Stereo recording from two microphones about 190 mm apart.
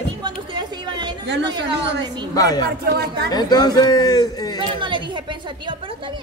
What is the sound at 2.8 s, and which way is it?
Speech, 55° right (ahead or behind).